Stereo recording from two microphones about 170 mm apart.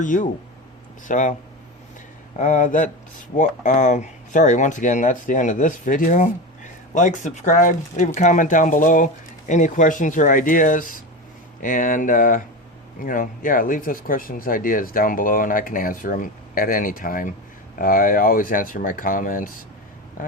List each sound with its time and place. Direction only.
0.0 s speech: 50° left (ahead or behind)
2.4 s speech: 50° left (ahead or behind)